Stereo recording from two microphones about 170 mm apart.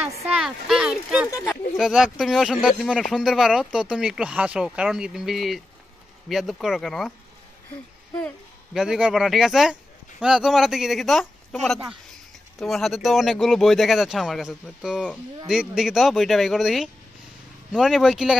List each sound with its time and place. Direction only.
0.0 s speech: 15° right (ahead or behind)
0.4 s speech: centre (ahead or behind)
8.7 s speech: 5° right (ahead or behind)